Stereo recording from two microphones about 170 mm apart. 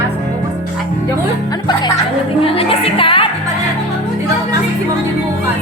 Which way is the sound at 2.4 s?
35° left (ahead or behind).